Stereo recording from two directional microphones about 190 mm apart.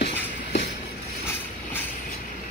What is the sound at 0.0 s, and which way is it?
Train, 60° left (ahead or behind).